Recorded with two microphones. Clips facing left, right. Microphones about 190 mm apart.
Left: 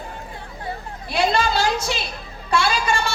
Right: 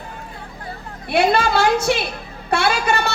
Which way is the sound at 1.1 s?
60° right (ahead or behind).